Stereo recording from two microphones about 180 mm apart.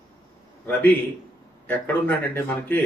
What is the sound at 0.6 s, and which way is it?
Speech, 15° left (ahead or behind).